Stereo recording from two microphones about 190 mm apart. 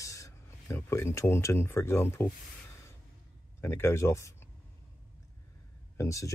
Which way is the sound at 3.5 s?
15° left (ahead or behind).